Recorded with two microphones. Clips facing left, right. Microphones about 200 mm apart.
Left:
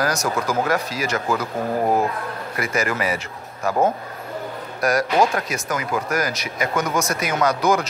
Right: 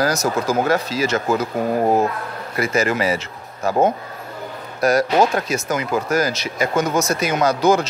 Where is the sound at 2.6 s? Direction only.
25° right (ahead or behind).